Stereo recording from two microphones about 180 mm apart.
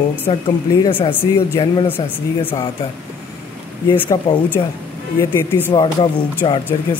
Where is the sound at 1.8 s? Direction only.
10° left (ahead or behind).